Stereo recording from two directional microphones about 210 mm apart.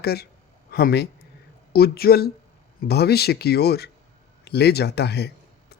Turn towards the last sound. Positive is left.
turn(degrees=50)  # may be behind; listen again after turning